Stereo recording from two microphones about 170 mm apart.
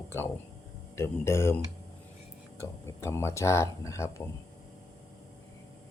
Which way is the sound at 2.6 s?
15° left (ahead or behind).